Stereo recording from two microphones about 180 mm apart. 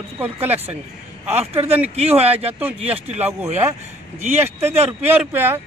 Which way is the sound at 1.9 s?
35° right (ahead or behind).